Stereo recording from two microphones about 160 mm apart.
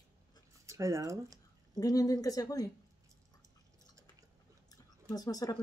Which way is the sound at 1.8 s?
20° left (ahead or behind).